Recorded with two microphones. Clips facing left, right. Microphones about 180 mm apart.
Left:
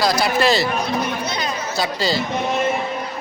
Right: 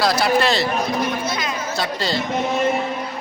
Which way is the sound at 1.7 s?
Centre (ahead or behind).